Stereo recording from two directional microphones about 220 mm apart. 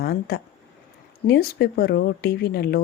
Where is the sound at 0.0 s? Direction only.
45° left (ahead or behind).